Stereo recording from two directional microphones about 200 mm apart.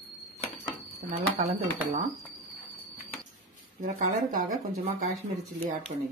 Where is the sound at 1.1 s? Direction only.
30° right (ahead or behind).